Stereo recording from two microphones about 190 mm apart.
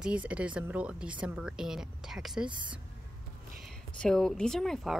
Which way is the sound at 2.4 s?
25° right (ahead or behind).